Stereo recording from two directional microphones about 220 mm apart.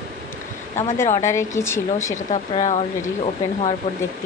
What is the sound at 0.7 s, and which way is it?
Speech, 10° left (ahead or behind).